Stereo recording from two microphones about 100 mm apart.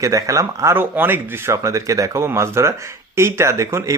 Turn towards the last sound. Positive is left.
turn(degrees=-30)  # may be behind; listen again after turning